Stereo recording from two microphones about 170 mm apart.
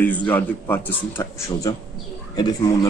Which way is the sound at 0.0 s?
10° left (ahead or behind).